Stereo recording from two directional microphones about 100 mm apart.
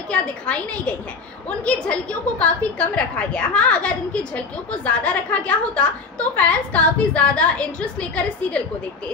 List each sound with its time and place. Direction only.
0.1 s a woman's voice: 10° left (ahead or behind)